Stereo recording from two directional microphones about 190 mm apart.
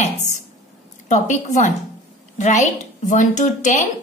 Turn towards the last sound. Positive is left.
turn(degrees=40)  # may be behind; listen again after turning